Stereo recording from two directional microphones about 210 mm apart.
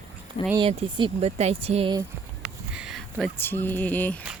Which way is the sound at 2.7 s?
Centre (ahead or behind).